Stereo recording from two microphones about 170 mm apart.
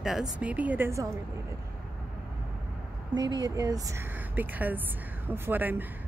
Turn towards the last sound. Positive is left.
turn(degrees=-10)  # may be behind; listen again after turning